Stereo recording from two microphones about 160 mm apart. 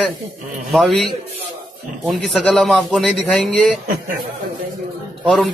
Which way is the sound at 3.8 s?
60° right (ahead or behind).